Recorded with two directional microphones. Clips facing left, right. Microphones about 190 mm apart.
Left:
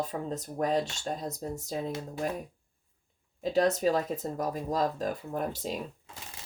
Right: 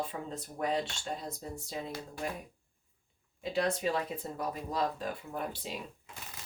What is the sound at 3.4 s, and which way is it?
Speech, 40° left (ahead or behind).